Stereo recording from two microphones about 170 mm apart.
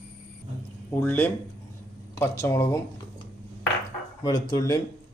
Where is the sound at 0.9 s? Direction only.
10° left (ahead or behind).